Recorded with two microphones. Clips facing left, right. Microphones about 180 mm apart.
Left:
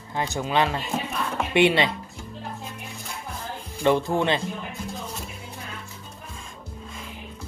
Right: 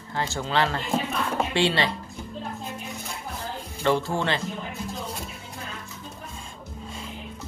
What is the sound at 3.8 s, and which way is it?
Speech, 20° left (ahead or behind).